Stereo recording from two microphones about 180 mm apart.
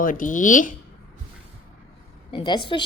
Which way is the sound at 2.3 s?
25° left (ahead or behind).